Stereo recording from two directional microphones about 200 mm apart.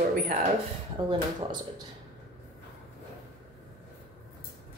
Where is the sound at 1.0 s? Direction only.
20° right (ahead or behind).